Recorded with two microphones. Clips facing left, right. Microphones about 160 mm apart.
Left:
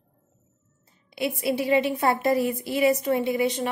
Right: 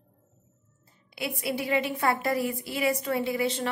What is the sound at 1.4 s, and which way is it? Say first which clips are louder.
A woman's voice: left 5 dB; 25° left (ahead or behind).